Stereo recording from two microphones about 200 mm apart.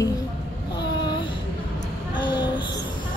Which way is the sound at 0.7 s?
20° left (ahead or behind).